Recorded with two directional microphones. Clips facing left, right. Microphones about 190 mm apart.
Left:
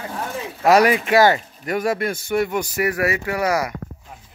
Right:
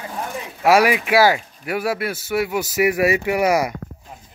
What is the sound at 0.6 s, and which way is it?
Speech, 10° right (ahead or behind).